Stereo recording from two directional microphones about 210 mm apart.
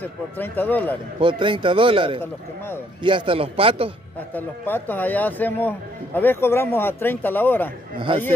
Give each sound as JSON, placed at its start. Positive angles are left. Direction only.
{"t": 0.0, "sound": "speech", "side_deg": 10}
{"t": 1.2, "sound": "a man's voice", "side_deg": -25}
{"t": 4.3, "sound": "speech", "side_deg": 10}